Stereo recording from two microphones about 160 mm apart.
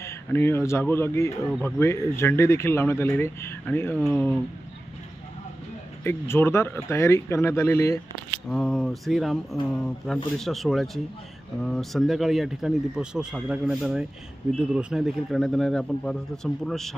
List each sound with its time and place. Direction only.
0.0 s speech: 15° left (ahead or behind)
6.0 s speech: 15° left (ahead or behind)
8.5 s speech: 5° left (ahead or behind)